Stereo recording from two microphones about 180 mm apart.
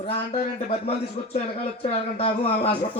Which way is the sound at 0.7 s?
35° left (ahead or behind).